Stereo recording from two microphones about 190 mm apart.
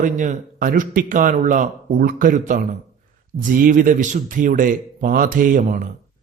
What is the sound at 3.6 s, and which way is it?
A man's voice, 45° right (ahead or behind).